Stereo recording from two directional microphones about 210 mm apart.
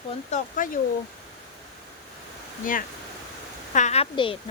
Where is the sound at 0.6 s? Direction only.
40° left (ahead or behind).